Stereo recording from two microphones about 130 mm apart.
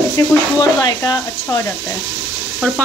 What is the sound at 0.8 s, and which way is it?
Speech, 35° left (ahead or behind).